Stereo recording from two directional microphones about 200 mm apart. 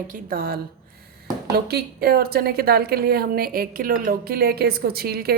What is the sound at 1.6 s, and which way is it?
Speech, 50° right (ahead or behind).